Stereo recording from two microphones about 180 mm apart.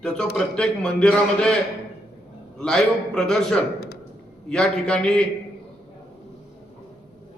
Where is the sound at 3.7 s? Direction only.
60° left (ahead or behind).